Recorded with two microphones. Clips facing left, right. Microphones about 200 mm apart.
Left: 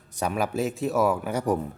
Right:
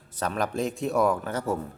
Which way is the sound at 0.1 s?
10° left (ahead or behind).